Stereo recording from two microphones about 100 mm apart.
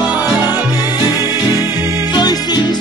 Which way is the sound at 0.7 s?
40° left (ahead or behind).